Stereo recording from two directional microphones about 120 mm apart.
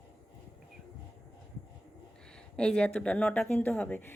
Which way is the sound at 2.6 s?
10° left (ahead or behind).